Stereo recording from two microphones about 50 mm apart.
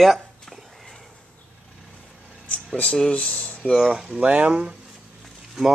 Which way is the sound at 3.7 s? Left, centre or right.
Centre.